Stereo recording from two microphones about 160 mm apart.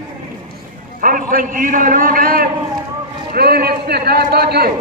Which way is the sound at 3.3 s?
75° right (ahead or behind).